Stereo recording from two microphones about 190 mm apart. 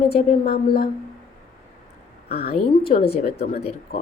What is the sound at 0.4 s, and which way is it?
Speech, 50° left (ahead or behind).